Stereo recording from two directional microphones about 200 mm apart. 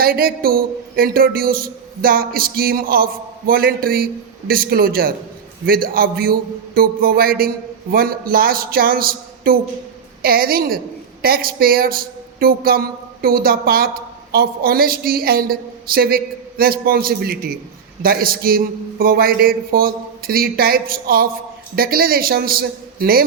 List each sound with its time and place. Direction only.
0.0 s speech: 50° right (ahead or behind)